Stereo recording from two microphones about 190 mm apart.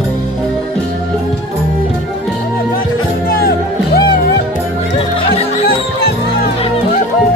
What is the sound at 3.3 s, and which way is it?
Music, 50° left (ahead or behind).